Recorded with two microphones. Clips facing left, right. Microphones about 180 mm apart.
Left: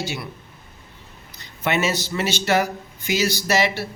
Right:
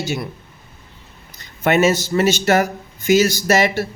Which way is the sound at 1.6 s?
45° right (ahead or behind).